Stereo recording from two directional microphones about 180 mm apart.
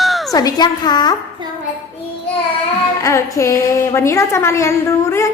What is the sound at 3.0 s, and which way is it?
A woman's voice, 15° left (ahead or behind).